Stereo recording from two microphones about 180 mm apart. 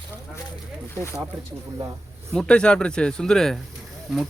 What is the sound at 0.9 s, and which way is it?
Speech, 15° left (ahead or behind).